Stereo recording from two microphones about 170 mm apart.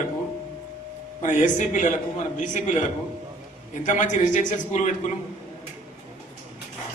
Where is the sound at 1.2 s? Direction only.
45° left (ahead or behind).